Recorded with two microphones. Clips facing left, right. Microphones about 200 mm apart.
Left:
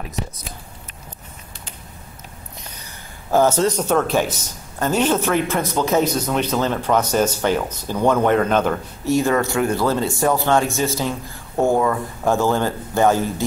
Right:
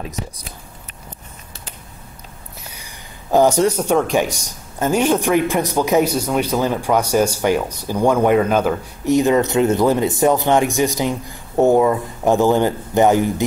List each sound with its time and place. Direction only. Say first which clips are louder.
2.7 s a man's voice: even; 15° right (ahead or behind)
9.0 s a man's voice: right 4 dB; 20° right (ahead or behind)